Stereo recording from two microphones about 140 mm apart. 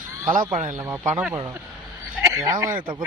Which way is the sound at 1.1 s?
15° right (ahead or behind).